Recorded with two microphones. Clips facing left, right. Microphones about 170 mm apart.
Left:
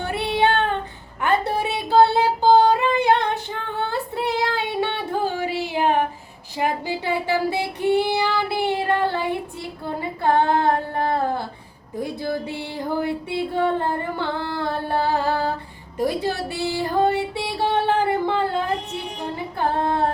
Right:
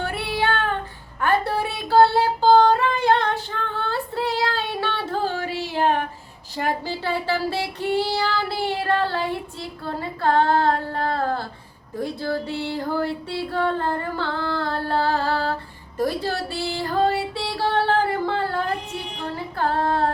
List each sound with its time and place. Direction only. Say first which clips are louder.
0.0 s child singing: left 4 dB; 20° left (ahead or behind)
1.2 s a sound: even; 20° left (ahead or behind)
6.6 s child singing: left 1 dB; 15° left (ahead or behind)
16.0 s music: left 1 dB; 15° left (ahead or behind)
19.2 s female singing: even; 20° left (ahead or behind)